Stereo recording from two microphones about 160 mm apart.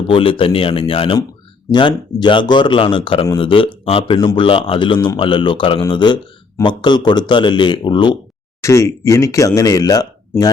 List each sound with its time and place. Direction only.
0.1 s speech: 35° left (ahead or behind)
8.6 s speech: 20° left (ahead or behind)